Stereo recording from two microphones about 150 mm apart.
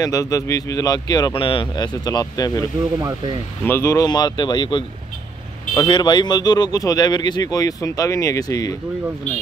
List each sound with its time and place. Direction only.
0.0 s speech: 20° left (ahead or behind)
3.0 s speech: 20° right (ahead or behind)
3.6 s speech: 15° left (ahead or behind)